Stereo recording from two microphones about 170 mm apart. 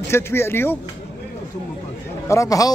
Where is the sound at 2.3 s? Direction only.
20° left (ahead or behind).